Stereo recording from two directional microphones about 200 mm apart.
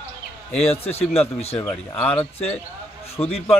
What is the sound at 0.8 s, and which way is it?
Speech, 30° left (ahead or behind).